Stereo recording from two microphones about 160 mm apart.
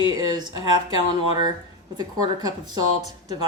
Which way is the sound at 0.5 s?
35° left (ahead or behind).